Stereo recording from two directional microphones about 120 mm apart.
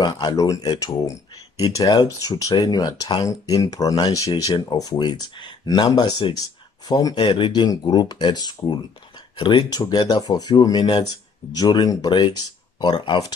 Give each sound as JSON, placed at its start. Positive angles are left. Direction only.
{"t": 0.0, "sound": "speech", "side_deg": 35}